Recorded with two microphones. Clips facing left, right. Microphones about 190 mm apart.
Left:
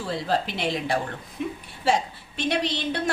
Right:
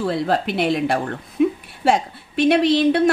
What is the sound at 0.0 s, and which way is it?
A woman's voice, 60° right (ahead or behind).